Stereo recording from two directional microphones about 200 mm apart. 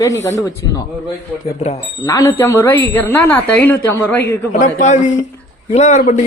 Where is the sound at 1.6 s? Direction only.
30° left (ahead or behind).